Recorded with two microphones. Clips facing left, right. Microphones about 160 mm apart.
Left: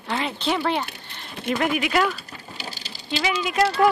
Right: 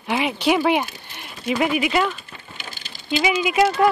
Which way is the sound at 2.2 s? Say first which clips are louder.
Left 2 dB; 35° left (ahead or behind).